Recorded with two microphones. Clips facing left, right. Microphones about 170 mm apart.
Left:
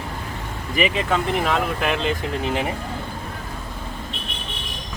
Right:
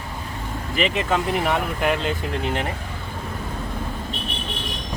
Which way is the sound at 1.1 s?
5° right (ahead or behind).